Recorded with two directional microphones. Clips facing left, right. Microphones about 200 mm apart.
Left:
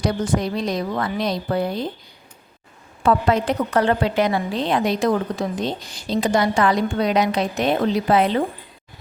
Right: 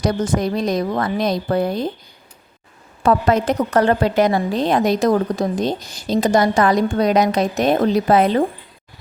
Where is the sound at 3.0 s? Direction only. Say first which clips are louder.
Right 2 dB; 45° right (ahead or behind).